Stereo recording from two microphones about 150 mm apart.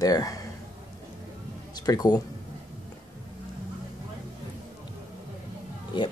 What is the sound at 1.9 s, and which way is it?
Speech, 25° left (ahead or behind).